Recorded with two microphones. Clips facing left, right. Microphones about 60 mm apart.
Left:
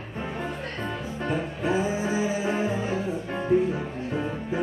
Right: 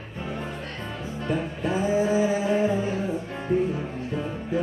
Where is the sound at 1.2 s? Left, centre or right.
Left.